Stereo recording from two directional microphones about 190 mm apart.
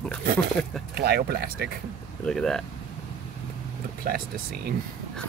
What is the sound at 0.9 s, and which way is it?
Speech, 55° right (ahead or behind).